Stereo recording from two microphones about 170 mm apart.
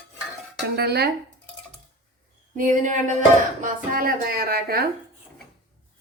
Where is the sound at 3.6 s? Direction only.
60° right (ahead or behind).